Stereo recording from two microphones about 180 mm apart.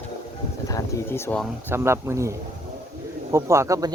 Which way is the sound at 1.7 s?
15° right (ahead or behind).